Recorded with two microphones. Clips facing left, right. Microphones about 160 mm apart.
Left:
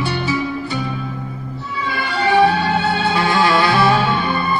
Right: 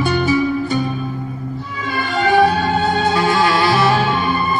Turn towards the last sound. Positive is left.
turn(degrees=-40)  # may be behind; listen again after turning